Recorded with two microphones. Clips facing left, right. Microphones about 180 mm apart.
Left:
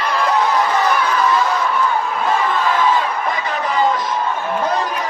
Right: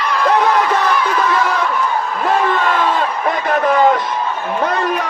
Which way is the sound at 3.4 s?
60° right (ahead or behind).